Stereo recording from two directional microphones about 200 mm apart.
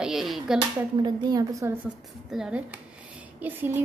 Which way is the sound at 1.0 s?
15° right (ahead or behind).